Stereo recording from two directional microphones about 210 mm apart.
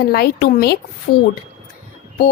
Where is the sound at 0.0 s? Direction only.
50° left (ahead or behind).